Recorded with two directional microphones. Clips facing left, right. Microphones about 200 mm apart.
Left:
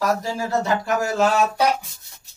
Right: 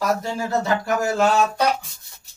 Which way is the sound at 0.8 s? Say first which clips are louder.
Even; centre (ahead or behind).